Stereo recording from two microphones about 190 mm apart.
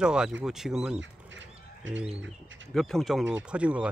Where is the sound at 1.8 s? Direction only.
80° right.